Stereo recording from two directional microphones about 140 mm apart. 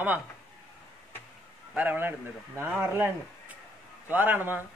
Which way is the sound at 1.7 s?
10° right (ahead or behind).